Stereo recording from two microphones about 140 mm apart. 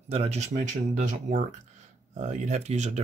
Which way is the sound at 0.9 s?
70° right (ahead or behind).